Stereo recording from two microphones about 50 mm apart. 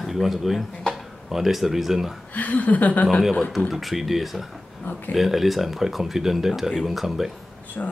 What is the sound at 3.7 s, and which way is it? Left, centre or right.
Speech, centre.